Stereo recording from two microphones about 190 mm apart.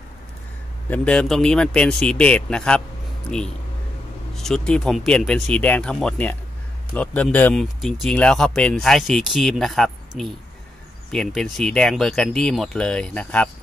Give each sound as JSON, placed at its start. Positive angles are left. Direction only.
{"t": 0.8, "sound": "speech", "side_deg": 5}